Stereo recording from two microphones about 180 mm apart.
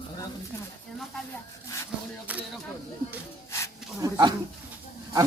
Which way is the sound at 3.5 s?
15° left (ahead or behind).